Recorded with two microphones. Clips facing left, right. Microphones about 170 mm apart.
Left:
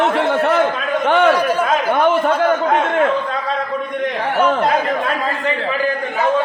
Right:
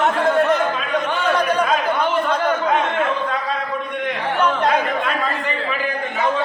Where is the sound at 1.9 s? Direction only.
50° left (ahead or behind).